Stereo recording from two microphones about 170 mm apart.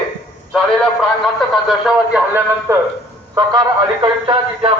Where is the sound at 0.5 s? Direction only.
Centre (ahead or behind).